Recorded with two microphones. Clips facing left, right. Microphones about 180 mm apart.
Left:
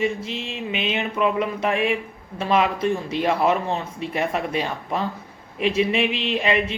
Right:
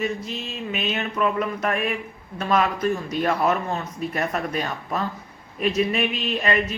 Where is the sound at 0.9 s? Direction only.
15° left (ahead or behind).